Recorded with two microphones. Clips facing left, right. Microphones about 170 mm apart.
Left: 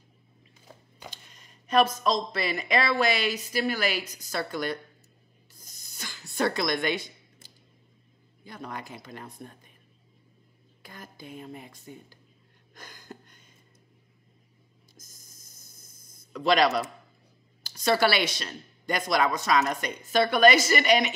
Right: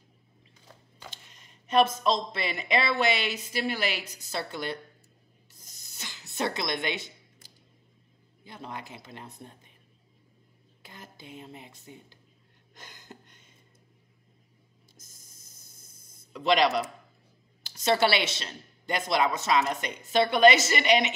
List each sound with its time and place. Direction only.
0.7 s a sound: 10° left (ahead or behind)
1.7 s speech: 25° right (ahead or behind)
5.5 s a sound: 25° right (ahead or behind)
7.4 s a sound: 25° left (ahead or behind)
8.5 s speech: 25° right (ahead or behind)
10.8 s speech: 25° right (ahead or behind)
12.7 s gasp: 20° right (ahead or behind)
15.0 s spray: 25° right (ahead or behind)
17.6 s speech: 25° right (ahead or behind)